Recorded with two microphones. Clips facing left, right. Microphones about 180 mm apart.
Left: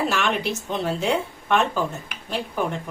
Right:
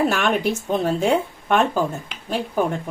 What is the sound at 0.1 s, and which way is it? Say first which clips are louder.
Speech: right 4 dB; 50° right (ahead or behind).